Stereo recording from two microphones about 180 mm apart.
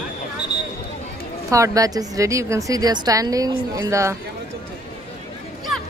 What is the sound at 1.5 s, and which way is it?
A woman's voice, 20° right (ahead or behind).